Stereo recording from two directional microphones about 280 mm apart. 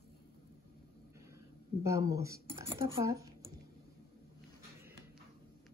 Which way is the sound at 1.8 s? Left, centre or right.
Centre.